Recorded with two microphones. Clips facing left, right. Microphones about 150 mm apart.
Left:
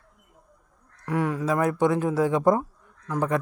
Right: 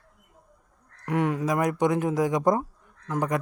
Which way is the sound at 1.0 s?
20° right (ahead or behind).